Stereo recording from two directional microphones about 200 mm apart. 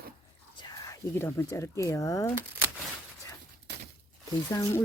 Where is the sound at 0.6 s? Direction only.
15° left (ahead or behind).